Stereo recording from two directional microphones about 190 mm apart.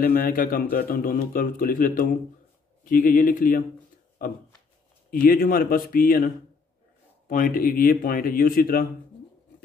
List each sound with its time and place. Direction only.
0.0 s speech: 55° left (ahead or behind)